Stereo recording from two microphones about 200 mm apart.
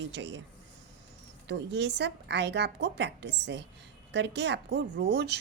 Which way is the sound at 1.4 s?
60° right (ahead or behind).